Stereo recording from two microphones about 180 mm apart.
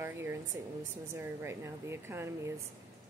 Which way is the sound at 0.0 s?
15° right (ahead or behind).